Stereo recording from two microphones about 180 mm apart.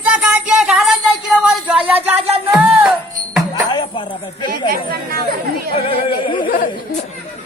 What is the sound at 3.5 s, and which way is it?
Music, 25° left (ahead or behind).